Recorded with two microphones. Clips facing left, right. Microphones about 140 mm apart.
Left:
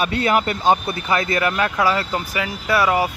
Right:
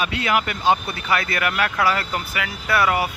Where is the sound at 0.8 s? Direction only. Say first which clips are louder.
Left 3 dB; 25° left (ahead or behind).